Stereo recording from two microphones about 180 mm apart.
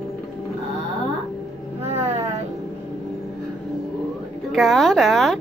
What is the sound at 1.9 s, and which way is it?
Vehicle, 35° right (ahead or behind).